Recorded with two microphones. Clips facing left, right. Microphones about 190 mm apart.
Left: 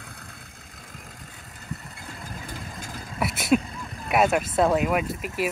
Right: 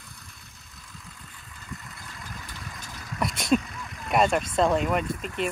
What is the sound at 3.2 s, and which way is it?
Speech, 5° left (ahead or behind).